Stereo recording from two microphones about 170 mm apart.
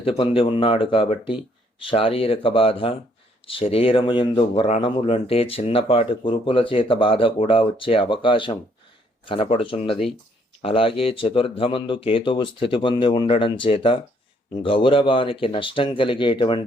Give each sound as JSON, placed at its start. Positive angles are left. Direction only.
{"t": 0.0, "sound": "speech", "side_deg": 30}